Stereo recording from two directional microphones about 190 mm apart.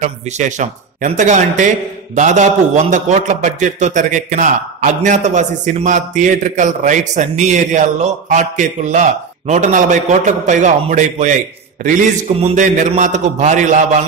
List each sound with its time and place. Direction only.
0.0 s a man's voice: 40° right (ahead or behind)